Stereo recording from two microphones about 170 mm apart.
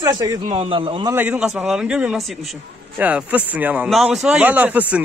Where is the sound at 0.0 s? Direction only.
20° right (ahead or behind).